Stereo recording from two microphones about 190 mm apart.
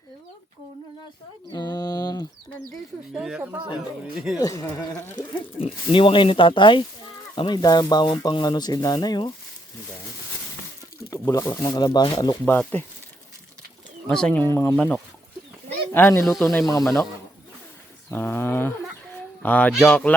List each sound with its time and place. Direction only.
1.5 s a sound: 20° left (ahead or behind)
2.6 s speech: centre (ahead or behind)
4.4 s speech: 20° left (ahead or behind)
5.2 s speech: 40° left (ahead or behind)
5.5 s speech: 30° left (ahead or behind)
11.1 s speech: 15° left (ahead or behind)
14.1 s speech: 5° left (ahead or behind)
16.2 s speech: centre (ahead or behind)
18.1 s speech: 10° left (ahead or behind)